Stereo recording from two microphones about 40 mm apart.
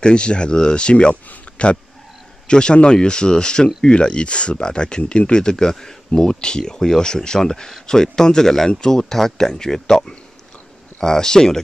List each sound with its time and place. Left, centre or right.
0.0 s speech: left